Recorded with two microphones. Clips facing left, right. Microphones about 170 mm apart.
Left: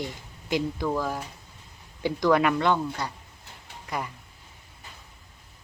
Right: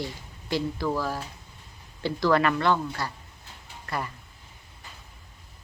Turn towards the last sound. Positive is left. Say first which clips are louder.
# even
turn(degrees=15)  # may be behind; listen again after turning